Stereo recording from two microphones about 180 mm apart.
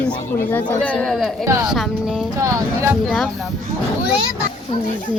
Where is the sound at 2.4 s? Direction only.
15° right (ahead or behind).